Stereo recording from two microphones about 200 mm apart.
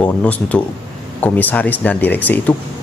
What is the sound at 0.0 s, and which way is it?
Speech, 5° left (ahead or behind).